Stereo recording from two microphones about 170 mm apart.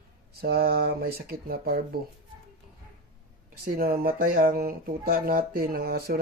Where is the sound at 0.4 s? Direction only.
65° right (ahead or behind).